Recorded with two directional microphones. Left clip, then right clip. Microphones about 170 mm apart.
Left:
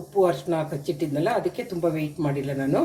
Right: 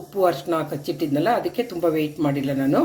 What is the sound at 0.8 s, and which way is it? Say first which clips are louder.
Speech: right 4 dB; 55° right (ahead or behind).